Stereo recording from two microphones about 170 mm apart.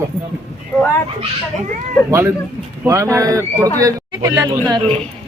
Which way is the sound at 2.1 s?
15° right (ahead or behind).